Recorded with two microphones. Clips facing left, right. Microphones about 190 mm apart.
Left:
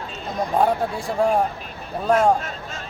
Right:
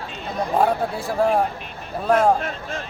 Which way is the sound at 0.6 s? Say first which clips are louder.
Even; centre (ahead or behind).